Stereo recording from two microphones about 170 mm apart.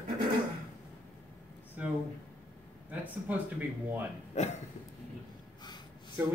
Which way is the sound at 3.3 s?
10° right (ahead or behind).